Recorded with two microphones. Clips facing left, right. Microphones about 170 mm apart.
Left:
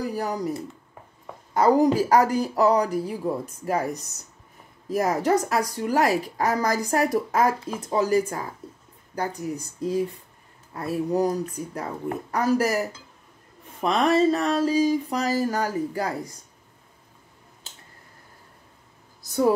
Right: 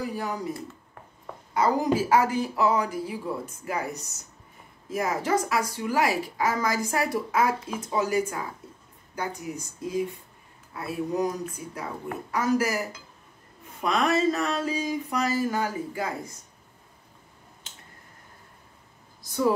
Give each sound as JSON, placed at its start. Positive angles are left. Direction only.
{"t": 0.0, "sound": "a woman's voice", "side_deg": 40}
{"t": 1.5, "sound": "a woman's voice", "side_deg": 40}